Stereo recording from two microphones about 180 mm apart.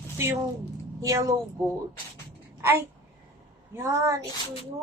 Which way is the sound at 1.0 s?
20° right (ahead or behind).